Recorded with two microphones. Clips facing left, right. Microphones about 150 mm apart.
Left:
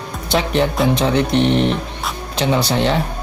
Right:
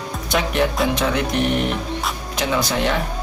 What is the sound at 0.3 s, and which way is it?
Speech, 30° left (ahead or behind).